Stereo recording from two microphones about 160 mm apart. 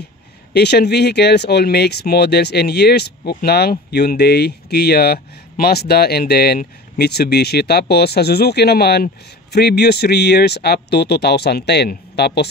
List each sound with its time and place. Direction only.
0.5 s speech: 90° left
3.9 s speech: 90° left